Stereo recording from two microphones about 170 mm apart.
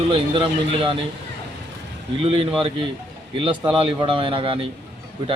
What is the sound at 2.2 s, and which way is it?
Speech, 35° right (ahead or behind).